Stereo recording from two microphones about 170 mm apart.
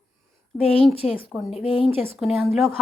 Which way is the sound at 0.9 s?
35° left (ahead or behind).